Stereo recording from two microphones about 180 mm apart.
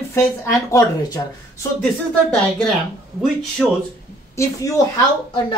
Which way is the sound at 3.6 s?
Centre (ahead or behind).